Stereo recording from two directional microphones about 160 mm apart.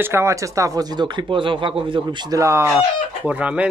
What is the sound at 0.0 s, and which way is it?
Speech, 15° right (ahead or behind).